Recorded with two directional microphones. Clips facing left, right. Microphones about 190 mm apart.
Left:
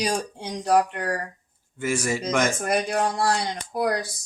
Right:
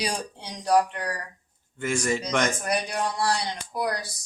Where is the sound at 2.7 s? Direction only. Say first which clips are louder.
Left 4 dB; 50° left (ahead or behind).